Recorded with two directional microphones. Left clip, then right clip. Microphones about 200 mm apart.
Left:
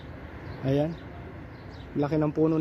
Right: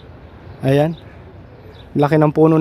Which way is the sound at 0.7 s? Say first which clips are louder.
Right 11 dB; 55° right (ahead or behind).